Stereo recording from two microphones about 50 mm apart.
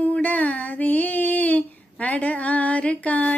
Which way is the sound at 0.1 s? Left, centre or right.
Left.